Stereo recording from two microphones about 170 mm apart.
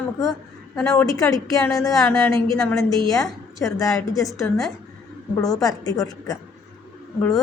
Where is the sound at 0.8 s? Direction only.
20° left (ahead or behind).